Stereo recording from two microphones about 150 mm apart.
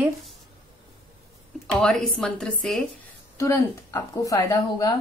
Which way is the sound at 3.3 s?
20° left (ahead or behind).